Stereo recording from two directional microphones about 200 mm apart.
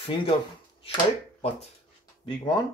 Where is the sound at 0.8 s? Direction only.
30° left (ahead or behind).